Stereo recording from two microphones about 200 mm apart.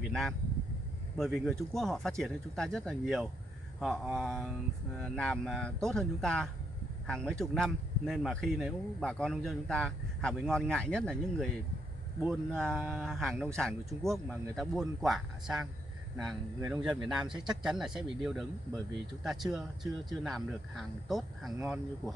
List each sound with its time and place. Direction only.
0.0 s speech: centre (ahead or behind)
16.5 s speech: 15° right (ahead or behind)
16.8 s speech: 5° right (ahead or behind)